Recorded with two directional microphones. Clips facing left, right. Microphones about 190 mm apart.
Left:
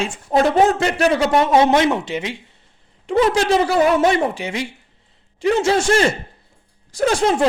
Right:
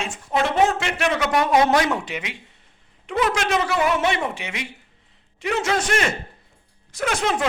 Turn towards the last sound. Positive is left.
turn(degrees=30)  # may be behind; listen again after turning